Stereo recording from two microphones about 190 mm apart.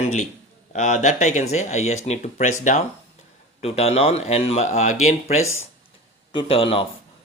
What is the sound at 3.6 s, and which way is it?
A man's voice, 35° left (ahead or behind).